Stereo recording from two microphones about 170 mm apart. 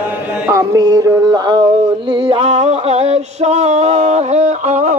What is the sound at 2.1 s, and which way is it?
Music, 30° right (ahead or behind).